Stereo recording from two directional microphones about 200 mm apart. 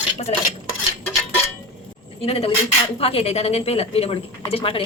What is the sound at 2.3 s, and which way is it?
A woman's voice, 30° left (ahead or behind).